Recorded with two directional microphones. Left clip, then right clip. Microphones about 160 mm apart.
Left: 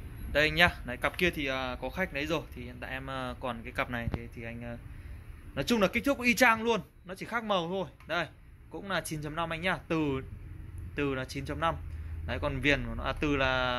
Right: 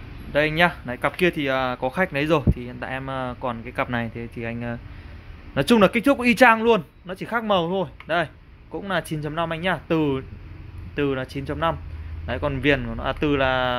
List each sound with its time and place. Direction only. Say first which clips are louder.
0.3 s speech: right 6 dB; 10° right (ahead or behind)
3.9 s speech: right 9 dB; 30° right (ahead or behind); by 13.7 s 15° right (ahead or behind)